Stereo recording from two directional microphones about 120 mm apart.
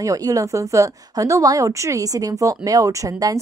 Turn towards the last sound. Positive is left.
turn(degrees=-30)  # may be behind; listen again after turning